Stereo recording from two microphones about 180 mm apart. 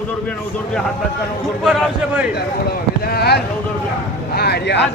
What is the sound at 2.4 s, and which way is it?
Speech, 60° left (ahead or behind).